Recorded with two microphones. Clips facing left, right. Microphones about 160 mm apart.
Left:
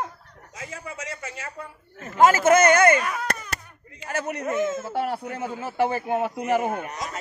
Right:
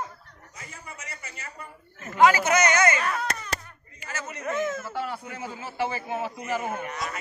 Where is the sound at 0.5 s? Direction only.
90° left.